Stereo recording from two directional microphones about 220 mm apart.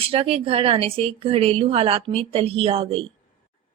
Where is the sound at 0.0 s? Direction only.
25° right (ahead or behind).